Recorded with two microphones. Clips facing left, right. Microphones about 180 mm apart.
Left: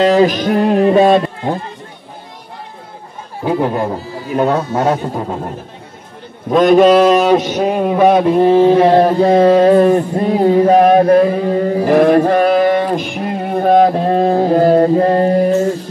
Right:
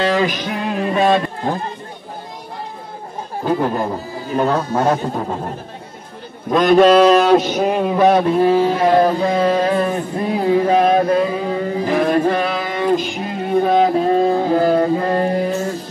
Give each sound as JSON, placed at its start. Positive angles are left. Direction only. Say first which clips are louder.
{"t": 0.1, "sound": "music", "louder": "left 7 dB", "side_deg": 45}
{"t": 3.4, "sound": "a man's voice", "louder": "left 3 dB", "side_deg": 10}
{"t": 6.5, "sound": "a man's voice", "louder": "left 3 dB", "side_deg": 5}
{"t": 7.3, "sound": "a man's voice", "louder": "left 1 dB", "side_deg": 0}
{"t": 10.8, "sound": "a sound", "louder": "left 6 dB", "side_deg": 50}
{"t": 14.3, "sound": "music", "louder": "left 4 dB", "side_deg": 40}